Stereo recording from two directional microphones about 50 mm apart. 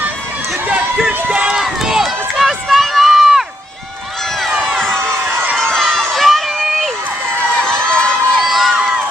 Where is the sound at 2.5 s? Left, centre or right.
Centre.